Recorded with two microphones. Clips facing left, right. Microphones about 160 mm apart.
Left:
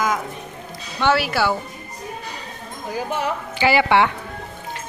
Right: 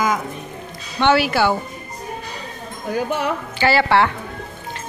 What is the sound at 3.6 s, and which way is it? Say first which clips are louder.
Speech: even; 15° left (ahead or behind).